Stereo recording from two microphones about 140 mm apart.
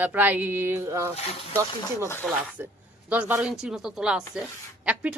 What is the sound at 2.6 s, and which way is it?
Speech, 15° right (ahead or behind).